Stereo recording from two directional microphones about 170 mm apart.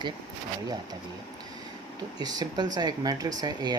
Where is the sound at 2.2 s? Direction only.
25° right (ahead or behind).